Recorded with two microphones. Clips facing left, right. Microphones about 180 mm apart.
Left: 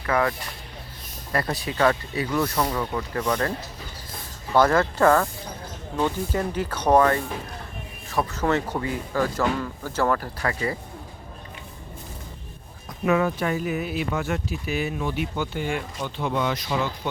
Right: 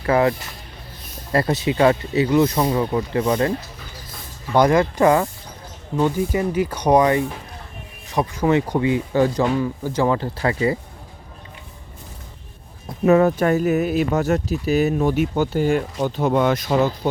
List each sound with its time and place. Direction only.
0.0 s speech: 25° right (ahead or behind)
4.5 s speech: 15° right (ahead or behind)
13.1 s speech: 45° right (ahead or behind)